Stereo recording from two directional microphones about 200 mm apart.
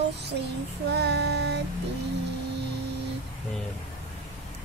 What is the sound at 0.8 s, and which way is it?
Child singing, 55° right (ahead or behind).